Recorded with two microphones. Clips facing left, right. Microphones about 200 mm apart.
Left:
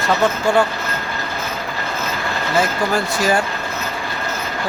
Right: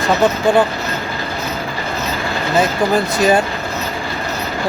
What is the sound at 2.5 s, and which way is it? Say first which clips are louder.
Speech: right 4 dB; 20° right (ahead or behind).